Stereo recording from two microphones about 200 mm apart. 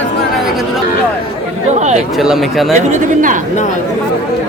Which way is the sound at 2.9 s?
40° right (ahead or behind).